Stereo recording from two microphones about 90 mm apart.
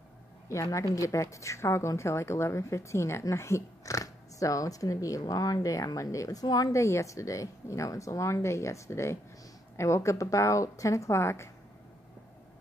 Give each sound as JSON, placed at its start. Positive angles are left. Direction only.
{"t": 0.5, "sound": "a woman's voice", "side_deg": 35}